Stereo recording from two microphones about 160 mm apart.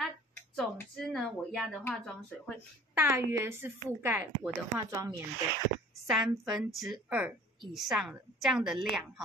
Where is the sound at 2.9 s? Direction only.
15° right (ahead or behind).